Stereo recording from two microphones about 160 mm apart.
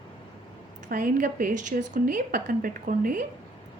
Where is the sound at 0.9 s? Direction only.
60° right (ahead or behind).